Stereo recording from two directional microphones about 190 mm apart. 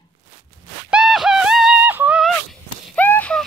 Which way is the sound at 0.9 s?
Centre (ahead or behind).